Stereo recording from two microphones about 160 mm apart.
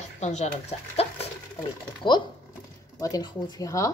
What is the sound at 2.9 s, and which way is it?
Speech, 20° left (ahead or behind).